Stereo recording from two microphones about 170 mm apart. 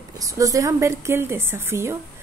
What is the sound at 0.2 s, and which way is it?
A woman's voice, 20° right (ahead or behind).